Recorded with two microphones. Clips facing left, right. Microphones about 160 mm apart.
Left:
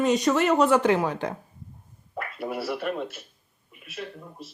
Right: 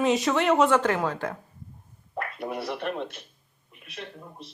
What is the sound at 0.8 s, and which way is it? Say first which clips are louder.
Speech: left 3 dB; 15° left (ahead or behind).